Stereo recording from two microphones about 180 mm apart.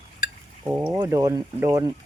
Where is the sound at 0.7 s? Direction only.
15° right (ahead or behind).